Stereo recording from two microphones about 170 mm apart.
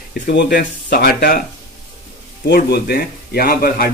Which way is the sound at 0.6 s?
55° left (ahead or behind).